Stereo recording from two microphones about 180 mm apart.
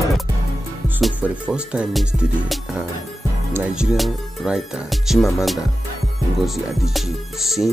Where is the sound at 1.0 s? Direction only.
5° right (ahead or behind).